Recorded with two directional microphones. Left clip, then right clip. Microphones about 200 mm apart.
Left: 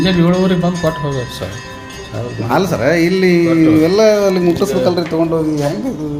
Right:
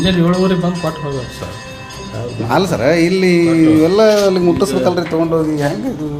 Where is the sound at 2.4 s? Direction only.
Centre (ahead or behind).